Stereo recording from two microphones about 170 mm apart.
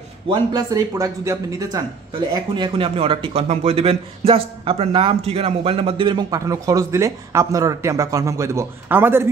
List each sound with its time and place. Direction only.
0.3 s a man's voice: 25° right (ahead or behind)